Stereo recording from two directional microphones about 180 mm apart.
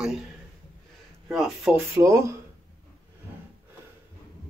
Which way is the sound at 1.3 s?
Centre (ahead or behind).